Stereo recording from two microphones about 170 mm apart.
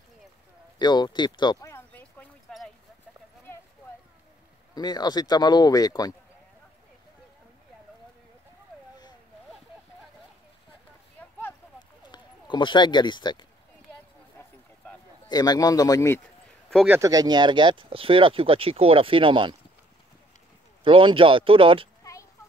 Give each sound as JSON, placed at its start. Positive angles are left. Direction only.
{"t": 0.7, "sound": "a sound", "side_deg": 25}
{"t": 4.7, "sound": "speech", "side_deg": 25}
{"t": 11.1, "sound": "a sound", "side_deg": 10}
{"t": 12.1, "sound": "speech", "side_deg": 25}
{"t": 15.2, "sound": "speech", "side_deg": 25}
{"t": 16.8, "sound": "speech", "side_deg": -15}
{"t": 20.8, "sound": "speech", "side_deg": -30}